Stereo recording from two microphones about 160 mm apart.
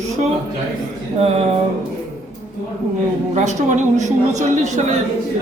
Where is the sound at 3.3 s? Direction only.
50° right (ahead or behind).